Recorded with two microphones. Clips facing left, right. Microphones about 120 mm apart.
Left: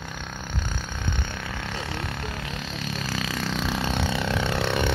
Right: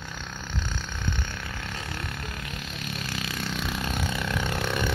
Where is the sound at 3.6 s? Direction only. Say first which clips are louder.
Left 4 dB; 30° left (ahead or behind).